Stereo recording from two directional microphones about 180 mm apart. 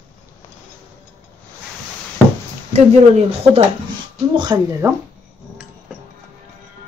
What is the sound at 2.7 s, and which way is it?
Speech, 35° right (ahead or behind).